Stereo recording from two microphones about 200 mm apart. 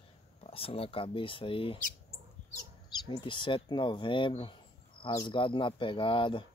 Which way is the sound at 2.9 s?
25° left (ahead or behind).